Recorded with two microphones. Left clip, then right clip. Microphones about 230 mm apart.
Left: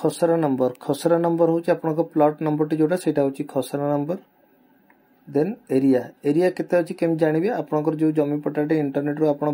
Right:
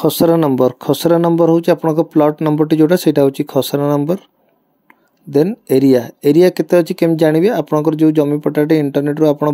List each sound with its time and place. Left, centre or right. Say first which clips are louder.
0.0 s speech: right 8 dB; right
5.3 s speech: right 9 dB; right